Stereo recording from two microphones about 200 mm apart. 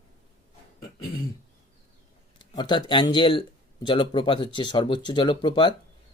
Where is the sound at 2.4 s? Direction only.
25° left (ahead or behind).